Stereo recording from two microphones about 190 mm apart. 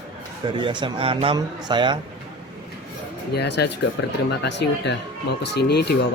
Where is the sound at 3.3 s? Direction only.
65° left (ahead or behind).